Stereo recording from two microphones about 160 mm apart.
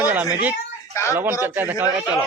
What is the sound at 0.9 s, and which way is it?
Speech, 15° left (ahead or behind).